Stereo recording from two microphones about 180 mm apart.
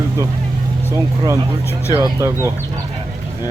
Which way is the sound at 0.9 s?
20° right (ahead or behind).